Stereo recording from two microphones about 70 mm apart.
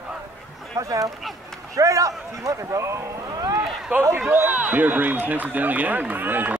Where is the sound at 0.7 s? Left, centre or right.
Right.